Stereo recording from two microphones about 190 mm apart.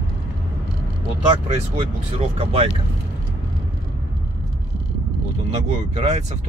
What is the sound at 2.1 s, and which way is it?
Speech, 30° right (ahead or behind).